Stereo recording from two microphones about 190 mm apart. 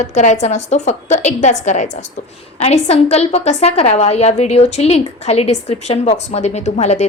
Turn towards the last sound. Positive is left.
turn(degrees=35)  # may be behind; listen again after turning